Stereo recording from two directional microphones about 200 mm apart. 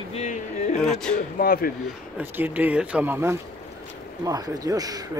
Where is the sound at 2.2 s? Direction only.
10° right (ahead or behind).